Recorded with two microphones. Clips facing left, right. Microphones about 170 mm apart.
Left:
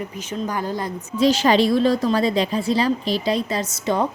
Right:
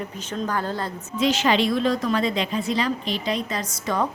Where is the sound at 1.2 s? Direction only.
35° left (ahead or behind).